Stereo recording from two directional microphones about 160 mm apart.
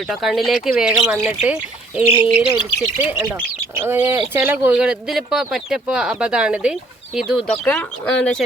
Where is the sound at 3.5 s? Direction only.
15° right (ahead or behind).